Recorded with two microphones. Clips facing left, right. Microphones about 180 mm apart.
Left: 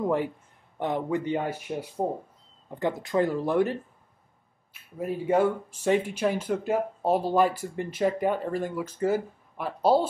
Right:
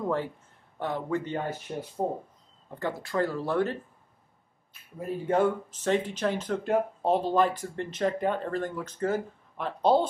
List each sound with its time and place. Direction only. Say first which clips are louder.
0.0 s speech: left 3 dB; 15° left (ahead or behind)
5.0 s speech: left 2 dB; 10° left (ahead or behind)